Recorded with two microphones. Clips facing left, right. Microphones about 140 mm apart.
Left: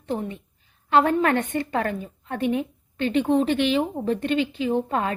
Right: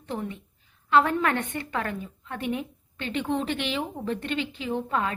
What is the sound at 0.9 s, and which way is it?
A woman's voice, 35° left (ahead or behind).